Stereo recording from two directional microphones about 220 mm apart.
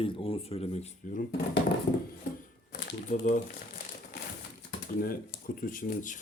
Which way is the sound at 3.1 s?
35° left (ahead or behind).